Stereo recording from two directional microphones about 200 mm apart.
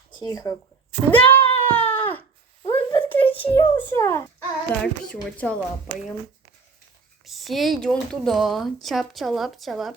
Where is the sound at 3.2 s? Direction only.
25° left (ahead or behind).